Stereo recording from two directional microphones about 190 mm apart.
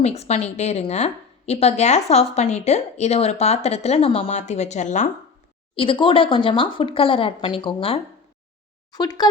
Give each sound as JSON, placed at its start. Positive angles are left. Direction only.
{"t": 0.0, "sound": "a woman's voice", "side_deg": 35}
{"t": 5.7, "sound": "speech", "side_deg": 30}